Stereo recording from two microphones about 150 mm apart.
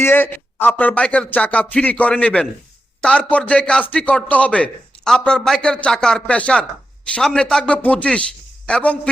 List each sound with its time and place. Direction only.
0.0 s a man's voice: 15° left (ahead or behind)